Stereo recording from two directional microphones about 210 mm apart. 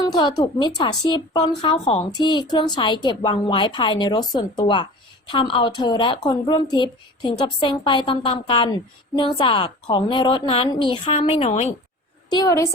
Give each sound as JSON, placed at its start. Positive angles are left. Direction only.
{"t": 0.0, "sound": "a woman's voice", "side_deg": 20}
{"t": 12.3, "sound": "a woman's voice", "side_deg": 15}